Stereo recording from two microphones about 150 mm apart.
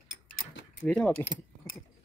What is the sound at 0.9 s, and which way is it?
Speech, 10° left (ahead or behind).